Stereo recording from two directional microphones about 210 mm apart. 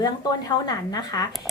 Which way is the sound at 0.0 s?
15° left (ahead or behind).